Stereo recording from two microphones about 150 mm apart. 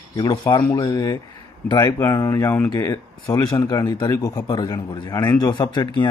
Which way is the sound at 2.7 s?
25° left (ahead or behind).